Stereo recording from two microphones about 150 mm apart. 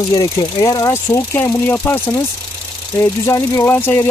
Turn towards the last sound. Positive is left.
turn(degrees=15)  # may be behind; listen again after turning